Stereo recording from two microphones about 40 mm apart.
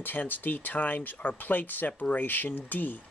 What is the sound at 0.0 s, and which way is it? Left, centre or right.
Speech, left.